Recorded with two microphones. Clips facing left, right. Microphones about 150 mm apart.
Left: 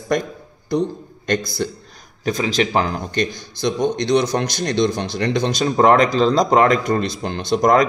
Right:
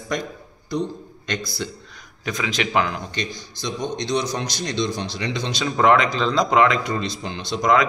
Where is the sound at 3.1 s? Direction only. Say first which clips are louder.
Left 8 dB; 55° left (ahead or behind).